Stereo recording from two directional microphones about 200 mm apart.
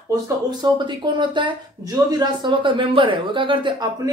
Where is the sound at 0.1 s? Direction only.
20° right (ahead or behind).